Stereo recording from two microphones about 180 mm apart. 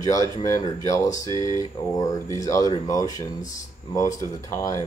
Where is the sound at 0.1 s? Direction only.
20° left (ahead or behind).